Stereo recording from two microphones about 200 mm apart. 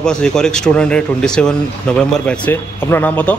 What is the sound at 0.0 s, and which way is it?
A man's voice, 5° left (ahead or behind).